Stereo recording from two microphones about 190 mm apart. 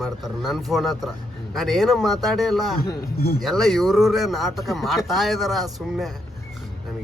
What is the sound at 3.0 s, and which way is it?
Speech, 55° left (ahead or behind).